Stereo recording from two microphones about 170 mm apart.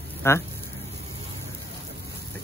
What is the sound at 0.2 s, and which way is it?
Speech, 15° left (ahead or behind).